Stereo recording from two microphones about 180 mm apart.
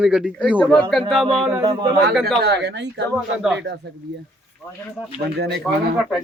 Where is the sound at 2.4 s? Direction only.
70° right (ahead or behind).